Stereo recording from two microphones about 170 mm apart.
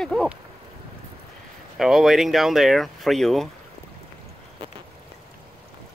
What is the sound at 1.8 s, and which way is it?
Speech, centre (ahead or behind).